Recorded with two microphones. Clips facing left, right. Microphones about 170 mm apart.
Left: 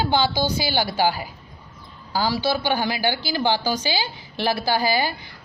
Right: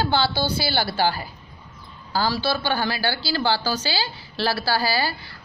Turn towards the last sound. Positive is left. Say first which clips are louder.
# left 2 dB
turn(degrees=15)  # may be behind; listen again after turning